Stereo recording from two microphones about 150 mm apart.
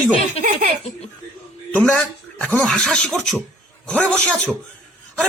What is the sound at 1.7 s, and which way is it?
A man's voice, 10° left (ahead or behind).